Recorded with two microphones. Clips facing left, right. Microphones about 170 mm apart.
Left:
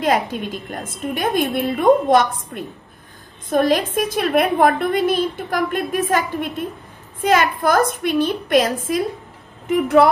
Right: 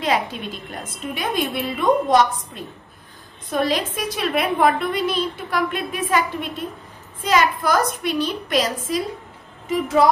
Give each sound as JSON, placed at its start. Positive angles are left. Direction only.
{"t": 0.0, "sound": "a woman's voice", "side_deg": 50}